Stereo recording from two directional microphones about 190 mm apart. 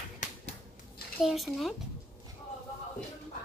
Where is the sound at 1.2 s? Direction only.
Centre (ahead or behind).